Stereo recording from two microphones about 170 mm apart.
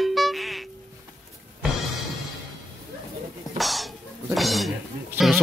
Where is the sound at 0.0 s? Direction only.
Centre (ahead or behind).